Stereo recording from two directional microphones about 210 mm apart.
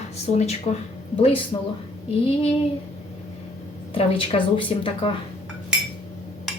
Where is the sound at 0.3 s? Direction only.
30° left (ahead or behind).